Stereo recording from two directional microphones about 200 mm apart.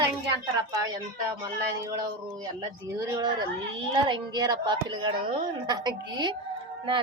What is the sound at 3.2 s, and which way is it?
A woman's voice, 20° right (ahead or behind).